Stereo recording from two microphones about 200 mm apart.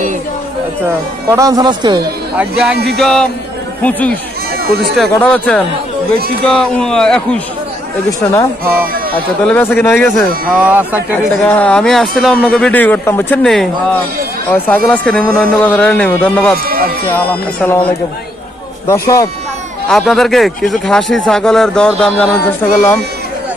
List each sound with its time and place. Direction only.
1.3 s speech: 15° right (ahead or behind)
2.3 s a man's voice: 5° right (ahead or behind)
9.4 s a man's voice: 10° left (ahead or behind)
10.5 s speech: 10° right (ahead or behind)
11.4 s a man's voice: 5° left (ahead or behind)
16.5 s speech: 45° right (ahead or behind)
17.1 s a man's voice: 10° left (ahead or behind)
19.9 s a man's voice: centre (ahead or behind)